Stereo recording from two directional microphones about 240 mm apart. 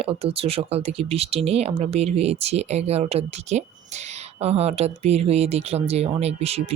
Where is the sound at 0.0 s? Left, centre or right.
Right.